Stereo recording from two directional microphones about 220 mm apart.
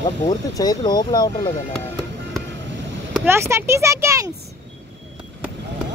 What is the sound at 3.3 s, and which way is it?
Speech, 10° right (ahead or behind).